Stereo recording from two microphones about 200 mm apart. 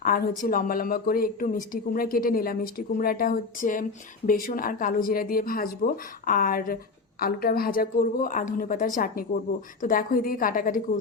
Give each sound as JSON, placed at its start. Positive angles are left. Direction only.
{"t": 0.0, "sound": "speech", "side_deg": 45}